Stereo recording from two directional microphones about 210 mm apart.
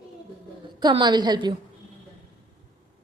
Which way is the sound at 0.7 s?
20° right (ahead or behind).